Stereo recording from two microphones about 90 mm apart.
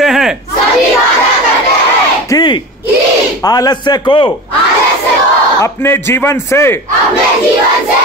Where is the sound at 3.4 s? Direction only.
45° left (ahead or behind); by 4.6 s 65° left (ahead or behind).